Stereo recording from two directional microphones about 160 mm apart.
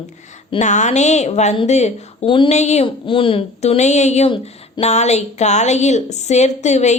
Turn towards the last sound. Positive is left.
turn(degrees=45)  # may be behind; listen again after turning